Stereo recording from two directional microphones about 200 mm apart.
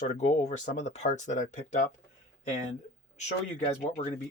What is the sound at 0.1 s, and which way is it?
Speech, 35° left (ahead or behind).